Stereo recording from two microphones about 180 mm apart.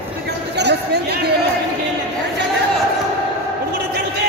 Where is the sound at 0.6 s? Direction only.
70° right (ahead or behind).